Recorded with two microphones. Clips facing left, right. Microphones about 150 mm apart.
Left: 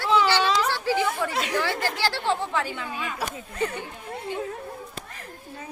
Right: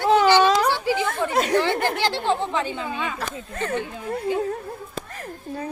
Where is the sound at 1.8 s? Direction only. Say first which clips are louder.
Right 5 dB; 55° right (ahead or behind).